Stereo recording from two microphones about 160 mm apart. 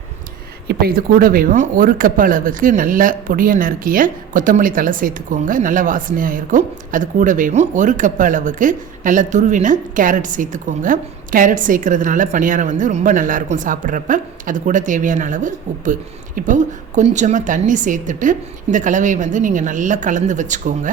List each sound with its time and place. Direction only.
0.7 s speech: 70° right (ahead or behind); by 20.9 s 50° right (ahead or behind)